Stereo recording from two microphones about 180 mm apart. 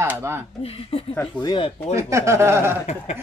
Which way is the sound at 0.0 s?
10° right (ahead or behind).